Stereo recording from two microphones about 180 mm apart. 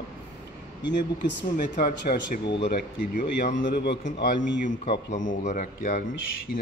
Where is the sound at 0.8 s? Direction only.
80° left.